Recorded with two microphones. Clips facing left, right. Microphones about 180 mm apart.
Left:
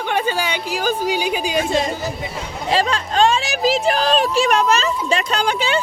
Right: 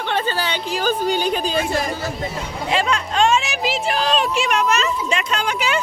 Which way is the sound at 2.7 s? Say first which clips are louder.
Left 2 dB; 35° left (ahead or behind).